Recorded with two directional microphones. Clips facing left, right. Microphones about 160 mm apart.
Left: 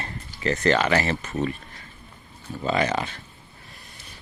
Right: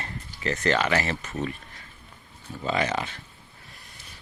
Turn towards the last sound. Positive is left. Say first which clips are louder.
# left 3 dB
turn(degrees=40)  # may be behind; listen again after turning